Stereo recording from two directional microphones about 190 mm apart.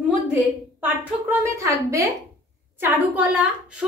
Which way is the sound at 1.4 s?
15° right (ahead or behind).